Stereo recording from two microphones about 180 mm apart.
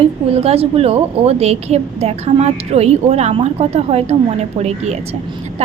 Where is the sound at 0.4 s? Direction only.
35° right (ahead or behind).